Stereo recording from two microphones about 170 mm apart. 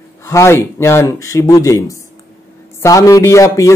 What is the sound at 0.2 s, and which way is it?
A man's voice, 15° left (ahead or behind).